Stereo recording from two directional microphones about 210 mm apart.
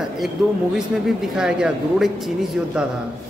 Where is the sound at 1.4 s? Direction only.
Centre (ahead or behind).